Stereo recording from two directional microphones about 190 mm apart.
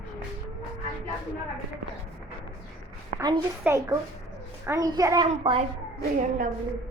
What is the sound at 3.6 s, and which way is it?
Speech, 15° right (ahead or behind).